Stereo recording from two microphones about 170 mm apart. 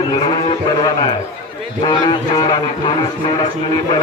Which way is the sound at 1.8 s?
25° left (ahead or behind).